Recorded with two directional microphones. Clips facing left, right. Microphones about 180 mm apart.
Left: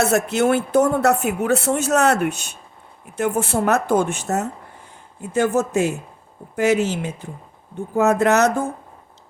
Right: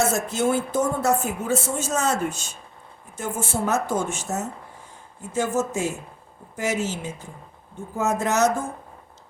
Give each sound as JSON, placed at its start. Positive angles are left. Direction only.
{"t": 0.0, "sound": "speech", "side_deg": 65}